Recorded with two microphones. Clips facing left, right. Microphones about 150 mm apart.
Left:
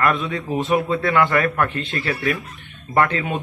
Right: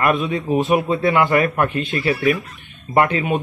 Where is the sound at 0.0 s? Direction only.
20° right (ahead or behind).